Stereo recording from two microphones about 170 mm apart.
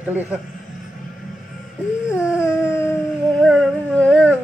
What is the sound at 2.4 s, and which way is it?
Dog, 15° left (ahead or behind).